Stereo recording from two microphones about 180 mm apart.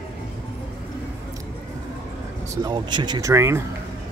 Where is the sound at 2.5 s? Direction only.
25° right (ahead or behind).